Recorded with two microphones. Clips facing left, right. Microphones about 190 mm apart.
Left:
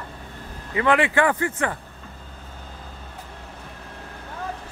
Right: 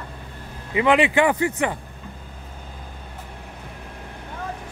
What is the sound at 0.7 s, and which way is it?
Speech, 15° right (ahead or behind).